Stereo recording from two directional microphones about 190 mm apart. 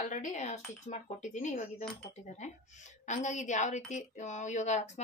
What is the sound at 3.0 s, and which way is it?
Speech, 40° left (ahead or behind).